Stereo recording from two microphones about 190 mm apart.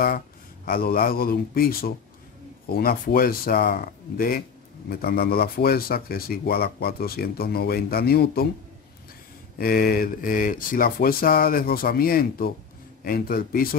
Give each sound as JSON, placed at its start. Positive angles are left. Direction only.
{"t": 0.7, "sound": "speech", "side_deg": 50}
{"t": 9.6, "sound": "speech", "side_deg": 50}